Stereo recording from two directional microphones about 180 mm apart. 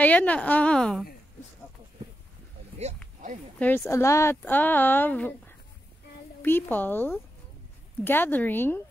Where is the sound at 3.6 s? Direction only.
10° left (ahead or behind).